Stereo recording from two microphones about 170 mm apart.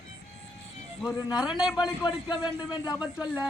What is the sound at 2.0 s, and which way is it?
Speech, 25° left (ahead or behind).